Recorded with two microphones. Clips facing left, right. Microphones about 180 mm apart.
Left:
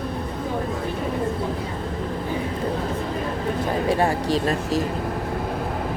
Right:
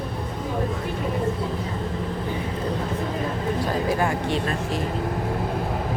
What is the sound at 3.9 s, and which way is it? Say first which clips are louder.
Speech: left 2 dB; 30° left (ahead or behind).